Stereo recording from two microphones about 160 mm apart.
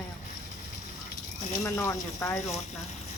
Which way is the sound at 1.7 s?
20° left (ahead or behind).